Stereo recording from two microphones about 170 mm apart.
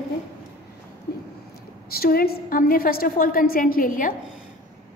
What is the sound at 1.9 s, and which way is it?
A woman's voice, 65° left (ahead or behind).